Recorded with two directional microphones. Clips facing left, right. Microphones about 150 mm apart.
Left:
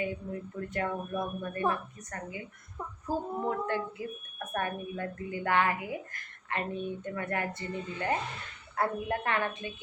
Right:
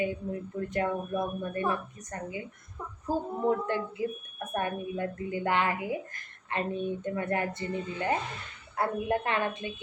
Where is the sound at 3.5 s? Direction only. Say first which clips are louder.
Right 5 dB; 20° right (ahead or behind).